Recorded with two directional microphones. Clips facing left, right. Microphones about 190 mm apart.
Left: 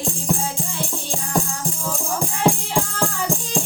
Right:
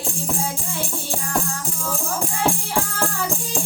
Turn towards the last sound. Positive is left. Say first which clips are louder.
# left 1 dB
turn(degrees=15)  # may be behind; listen again after turning